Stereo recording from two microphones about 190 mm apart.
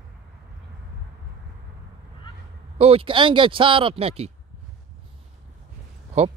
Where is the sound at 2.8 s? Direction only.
30° right (ahead or behind).